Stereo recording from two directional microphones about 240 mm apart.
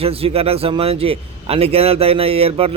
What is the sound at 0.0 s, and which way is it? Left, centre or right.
A man's voice, right.